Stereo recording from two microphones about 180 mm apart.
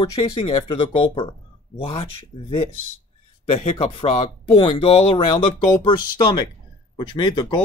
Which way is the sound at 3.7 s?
35° left (ahead or behind).